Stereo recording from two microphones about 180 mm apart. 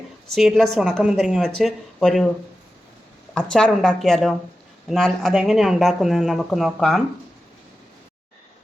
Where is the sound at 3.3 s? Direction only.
5° left (ahead or behind).